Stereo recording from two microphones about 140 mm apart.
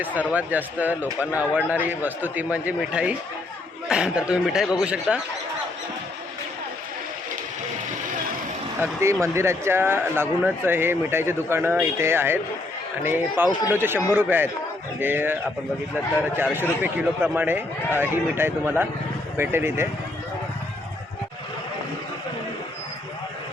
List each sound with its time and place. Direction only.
0.0 s speech: 10° right (ahead or behind)
8.8 s speech: 20° right (ahead or behind)